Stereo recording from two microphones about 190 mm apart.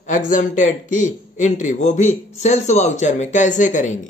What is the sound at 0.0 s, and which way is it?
A man's voice, 40° left (ahead or behind).